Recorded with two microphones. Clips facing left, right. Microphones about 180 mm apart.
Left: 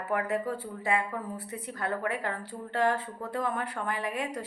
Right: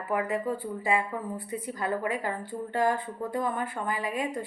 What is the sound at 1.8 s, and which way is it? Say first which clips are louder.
Speech: right 1 dB; 10° right (ahead or behind).